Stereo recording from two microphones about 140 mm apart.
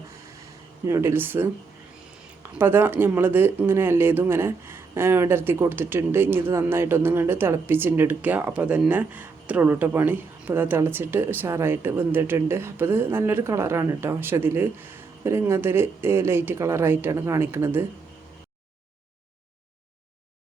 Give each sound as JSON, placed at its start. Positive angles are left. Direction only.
{"t": 0.9, "sound": "speech", "side_deg": -20}